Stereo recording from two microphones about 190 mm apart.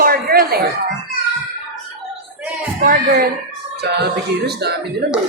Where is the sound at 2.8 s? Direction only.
55° right (ahead or behind).